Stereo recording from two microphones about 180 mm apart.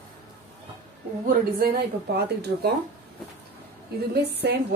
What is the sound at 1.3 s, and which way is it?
A woman's voice, 60° right (ahead or behind).